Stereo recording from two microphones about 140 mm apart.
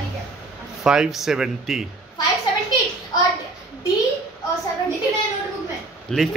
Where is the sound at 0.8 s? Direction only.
5° right (ahead or behind).